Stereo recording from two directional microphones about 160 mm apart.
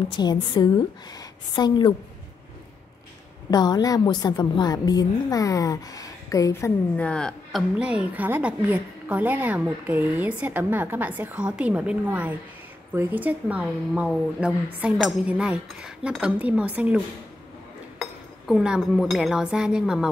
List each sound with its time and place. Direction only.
0.1 s a woman's voice: 25° left (ahead or behind)
3.4 s a woman's voice: 25° left (ahead or behind)
7.0 s a woman's voice: 5° left (ahead or behind)
18.5 s speech: 5° right (ahead or behind)